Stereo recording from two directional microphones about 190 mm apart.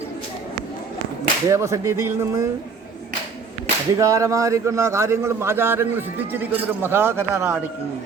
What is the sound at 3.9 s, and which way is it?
A man's voice, 15° right (ahead or behind).